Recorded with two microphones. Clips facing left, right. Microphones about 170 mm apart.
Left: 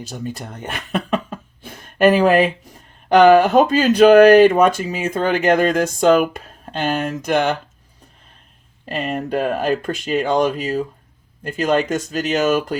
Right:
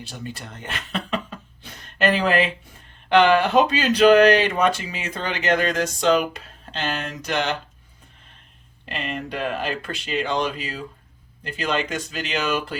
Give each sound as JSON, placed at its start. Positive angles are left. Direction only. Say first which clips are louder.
{"t": 0.0, "sound": "speech", "louder": "left 6 dB", "side_deg": 45}
{"t": 8.9, "sound": "speech", "louder": "left 7 dB", "side_deg": 45}